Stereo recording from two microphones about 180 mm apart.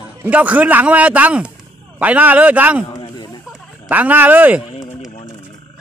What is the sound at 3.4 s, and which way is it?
Speech, 5° right (ahead or behind).